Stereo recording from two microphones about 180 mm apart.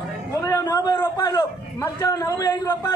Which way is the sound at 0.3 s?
15° left (ahead or behind).